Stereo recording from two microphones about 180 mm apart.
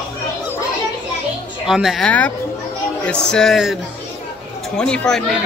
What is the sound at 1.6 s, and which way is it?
Speech, centre (ahead or behind).